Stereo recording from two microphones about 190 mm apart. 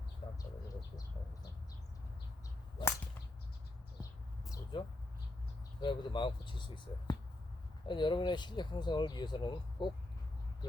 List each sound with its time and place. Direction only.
4.7 s speech: 25° left (ahead or behind)